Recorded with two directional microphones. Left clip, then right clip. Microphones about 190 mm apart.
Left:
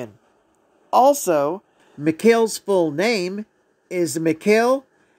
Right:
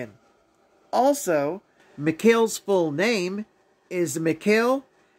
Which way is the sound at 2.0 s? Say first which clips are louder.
Left 3 dB; 20° left (ahead or behind).